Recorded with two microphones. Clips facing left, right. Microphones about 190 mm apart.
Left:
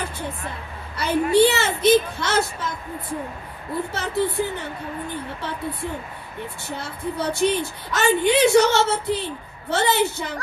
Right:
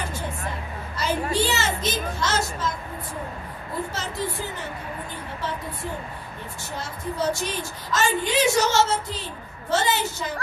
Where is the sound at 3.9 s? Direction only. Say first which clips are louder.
Left 6 dB; 60° left (ahead or behind).